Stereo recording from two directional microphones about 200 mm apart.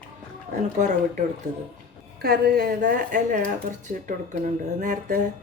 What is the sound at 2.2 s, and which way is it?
Speech, 50° right (ahead or behind).